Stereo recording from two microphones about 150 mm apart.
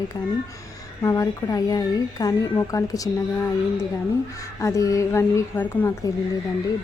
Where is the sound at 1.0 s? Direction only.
25° left (ahead or behind).